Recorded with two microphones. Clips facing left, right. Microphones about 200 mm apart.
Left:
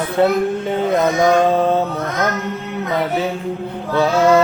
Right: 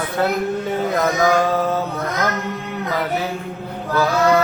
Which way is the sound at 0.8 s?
25° left (ahead or behind).